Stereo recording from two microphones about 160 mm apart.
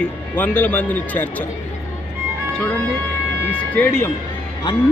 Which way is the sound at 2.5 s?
10° left (ahead or behind).